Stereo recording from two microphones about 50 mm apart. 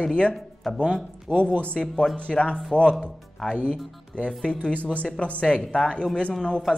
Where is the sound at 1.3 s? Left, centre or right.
Right.